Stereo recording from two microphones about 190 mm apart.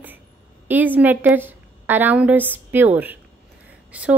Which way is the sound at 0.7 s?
10° right (ahead or behind).